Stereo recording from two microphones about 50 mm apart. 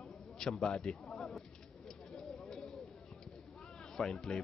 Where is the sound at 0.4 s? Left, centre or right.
Centre.